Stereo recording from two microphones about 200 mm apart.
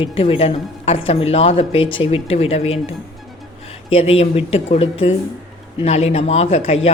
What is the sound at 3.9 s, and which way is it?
A man's voice, 30° left (ahead or behind).